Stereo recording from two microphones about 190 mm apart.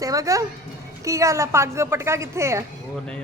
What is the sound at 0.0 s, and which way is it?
A woman's voice, 15° right (ahead or behind).